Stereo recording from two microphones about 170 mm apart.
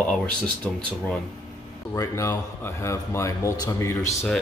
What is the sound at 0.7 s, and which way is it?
Speech, 5° left (ahead or behind).